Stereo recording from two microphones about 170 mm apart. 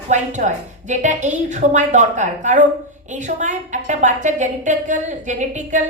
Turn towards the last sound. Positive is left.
turn(degrees=-45)  # may be behind; listen again after turning